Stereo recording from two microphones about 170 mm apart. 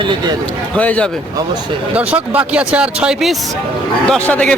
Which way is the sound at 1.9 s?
10° right (ahead or behind).